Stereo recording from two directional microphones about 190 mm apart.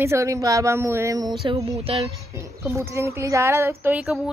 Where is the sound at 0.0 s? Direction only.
15° right (ahead or behind).